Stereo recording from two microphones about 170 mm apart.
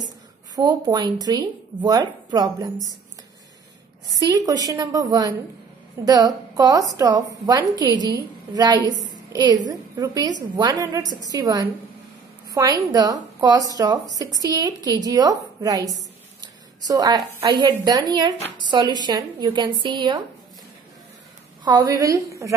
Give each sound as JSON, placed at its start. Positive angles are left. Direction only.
{"t": 0.6, "sound": "a woman's voice", "side_deg": -25}
{"t": 4.2, "sound": "a woman's voice", "side_deg": -20}
{"t": 21.6, "sound": "a woman's voice", "side_deg": -20}